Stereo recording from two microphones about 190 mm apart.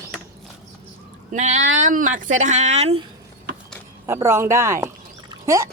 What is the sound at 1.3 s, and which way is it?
Speech, 40° right (ahead or behind).